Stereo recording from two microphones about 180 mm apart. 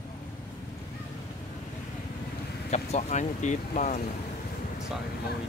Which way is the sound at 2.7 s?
40° left (ahead or behind).